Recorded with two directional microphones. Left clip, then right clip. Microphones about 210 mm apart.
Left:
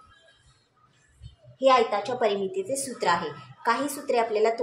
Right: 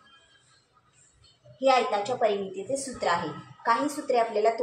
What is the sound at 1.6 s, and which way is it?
A woman's voice, 50° left (ahead or behind).